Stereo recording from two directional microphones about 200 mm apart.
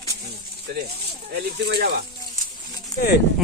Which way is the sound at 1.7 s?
55° right (ahead or behind).